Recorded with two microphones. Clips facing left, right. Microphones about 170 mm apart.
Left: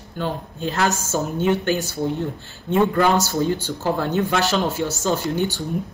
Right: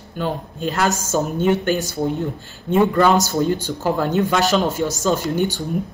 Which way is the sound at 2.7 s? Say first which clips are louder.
Right 2 dB; 15° right (ahead or behind).